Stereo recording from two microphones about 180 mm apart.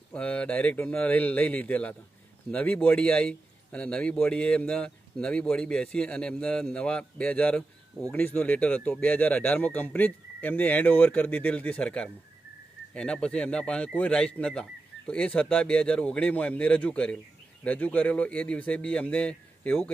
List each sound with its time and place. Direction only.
0.1 s a man's voice: 5° left (ahead or behind)